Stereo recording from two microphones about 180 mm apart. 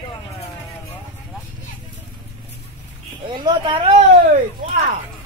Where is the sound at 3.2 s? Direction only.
25° right (ahead or behind).